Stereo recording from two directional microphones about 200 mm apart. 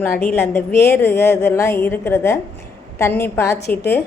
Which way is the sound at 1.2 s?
55° left (ahead or behind).